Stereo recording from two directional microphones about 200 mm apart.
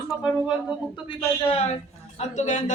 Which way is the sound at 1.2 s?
30° left (ahead or behind).